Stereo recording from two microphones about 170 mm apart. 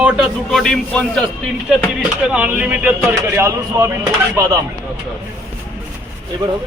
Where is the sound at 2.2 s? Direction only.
10° right (ahead or behind).